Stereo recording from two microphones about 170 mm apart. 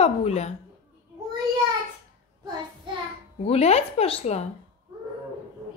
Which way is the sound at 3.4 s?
40° left (ahead or behind).